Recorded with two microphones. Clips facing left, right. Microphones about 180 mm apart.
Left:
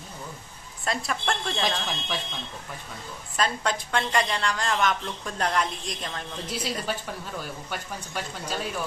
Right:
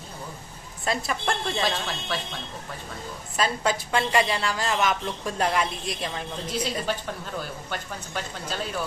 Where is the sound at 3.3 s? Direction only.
5° right (ahead or behind).